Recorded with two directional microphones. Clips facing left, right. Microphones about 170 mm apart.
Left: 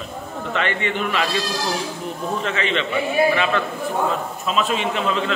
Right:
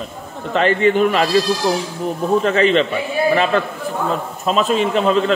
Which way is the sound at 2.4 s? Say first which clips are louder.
Right 9 dB; 40° right (ahead or behind).